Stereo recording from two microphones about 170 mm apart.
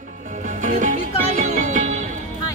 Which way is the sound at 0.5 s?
50° right (ahead or behind).